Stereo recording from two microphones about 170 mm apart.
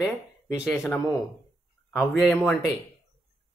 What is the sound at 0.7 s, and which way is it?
Speech, 15° left (ahead or behind).